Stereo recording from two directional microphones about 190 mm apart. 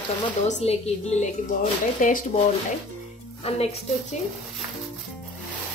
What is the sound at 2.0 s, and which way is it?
Speech, 45° left (ahead or behind).